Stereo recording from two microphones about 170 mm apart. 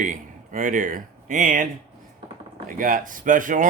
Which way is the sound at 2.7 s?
50° right (ahead or behind).